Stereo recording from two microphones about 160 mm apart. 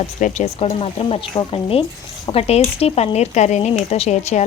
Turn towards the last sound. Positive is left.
turn(degrees=45)  # may be behind; listen again after turning